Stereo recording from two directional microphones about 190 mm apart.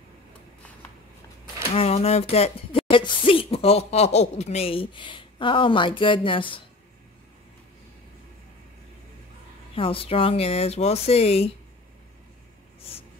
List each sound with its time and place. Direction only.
1.7 s speech: 30° left (ahead or behind)
9.8 s speech: 30° left (ahead or behind)